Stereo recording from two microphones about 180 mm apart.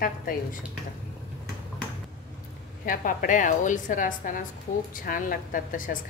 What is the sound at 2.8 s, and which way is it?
A woman's voice, 50° left (ahead or behind).